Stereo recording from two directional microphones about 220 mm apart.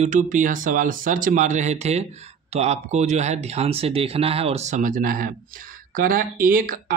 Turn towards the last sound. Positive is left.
turn(degrees=-40)  # may be behind; listen again after turning